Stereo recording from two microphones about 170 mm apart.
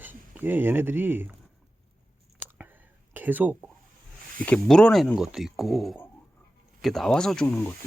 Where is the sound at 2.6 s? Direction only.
10° right (ahead or behind).